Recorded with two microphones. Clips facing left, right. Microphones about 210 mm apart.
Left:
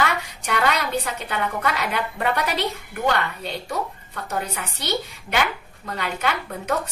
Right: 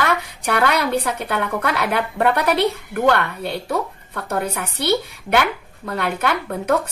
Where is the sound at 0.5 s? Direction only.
55° right (ahead or behind).